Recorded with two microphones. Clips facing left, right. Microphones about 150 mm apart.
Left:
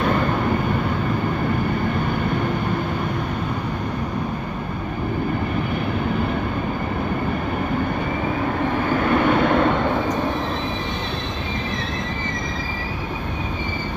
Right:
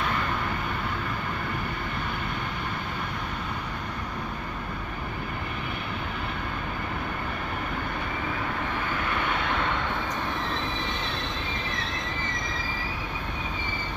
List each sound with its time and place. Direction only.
9.0 s vehicle: 50° left (ahead or behind)